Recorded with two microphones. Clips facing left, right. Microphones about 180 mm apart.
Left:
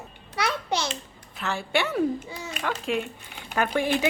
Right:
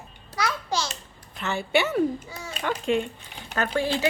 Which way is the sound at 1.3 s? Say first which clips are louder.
Right 2 dB; centre (ahead or behind).